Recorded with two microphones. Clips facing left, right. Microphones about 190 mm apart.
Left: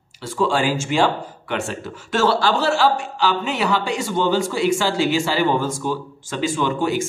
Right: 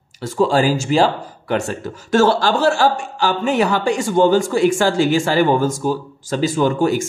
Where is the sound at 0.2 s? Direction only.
40° right (ahead or behind).